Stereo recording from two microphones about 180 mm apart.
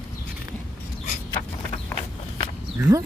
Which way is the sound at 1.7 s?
30° left (ahead or behind).